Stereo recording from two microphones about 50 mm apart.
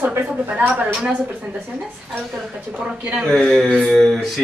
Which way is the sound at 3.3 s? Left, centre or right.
Centre.